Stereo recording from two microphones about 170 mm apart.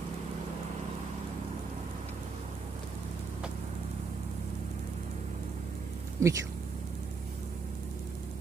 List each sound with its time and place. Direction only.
6.2 s speech: 15° right (ahead or behind)